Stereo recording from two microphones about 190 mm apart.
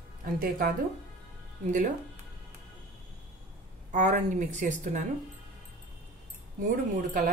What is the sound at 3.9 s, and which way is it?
A woman's voice, 40° right (ahead or behind).